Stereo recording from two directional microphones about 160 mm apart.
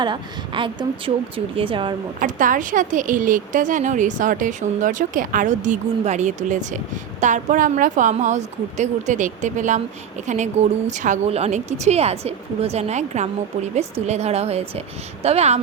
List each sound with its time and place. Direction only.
0.0 s a woman's voice: 30° right (ahead or behind)
2.1 s a woman's voice: 55° right (ahead or behind); by 15.5 s 40° right (ahead or behind)